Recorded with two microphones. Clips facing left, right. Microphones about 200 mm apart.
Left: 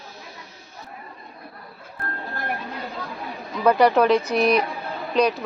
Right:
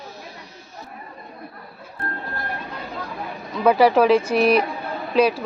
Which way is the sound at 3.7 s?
5° right (ahead or behind).